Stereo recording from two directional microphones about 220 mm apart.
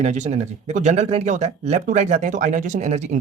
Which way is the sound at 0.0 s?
30° right (ahead or behind).